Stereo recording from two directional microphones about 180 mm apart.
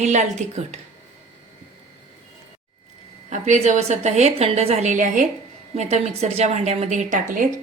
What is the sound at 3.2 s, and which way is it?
A woman's voice, 40° right (ahead or behind).